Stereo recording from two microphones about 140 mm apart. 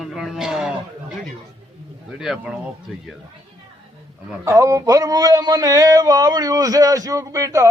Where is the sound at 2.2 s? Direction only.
5° right (ahead or behind).